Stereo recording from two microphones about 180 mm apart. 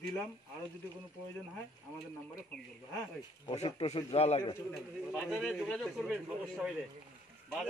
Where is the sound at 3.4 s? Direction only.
35° left (ahead or behind).